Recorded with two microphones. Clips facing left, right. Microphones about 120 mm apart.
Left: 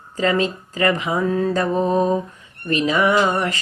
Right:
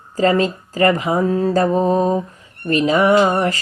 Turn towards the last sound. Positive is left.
turn(degrees=-35)  # may be behind; listen again after turning